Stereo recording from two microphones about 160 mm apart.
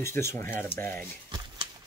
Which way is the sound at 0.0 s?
15° left (ahead or behind).